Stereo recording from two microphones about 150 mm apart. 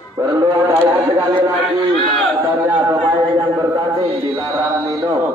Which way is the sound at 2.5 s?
25° right (ahead or behind).